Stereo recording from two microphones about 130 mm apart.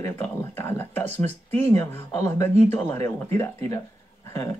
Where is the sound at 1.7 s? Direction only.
20° left (ahead or behind).